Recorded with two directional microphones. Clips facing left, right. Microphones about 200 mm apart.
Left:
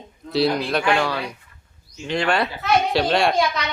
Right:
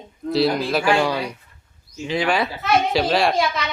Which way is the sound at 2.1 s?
Centre (ahead or behind).